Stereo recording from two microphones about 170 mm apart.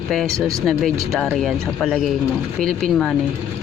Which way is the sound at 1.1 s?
Centre (ahead or behind).